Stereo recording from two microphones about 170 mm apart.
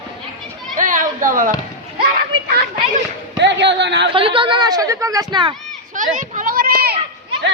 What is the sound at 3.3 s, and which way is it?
Speech, 90° right.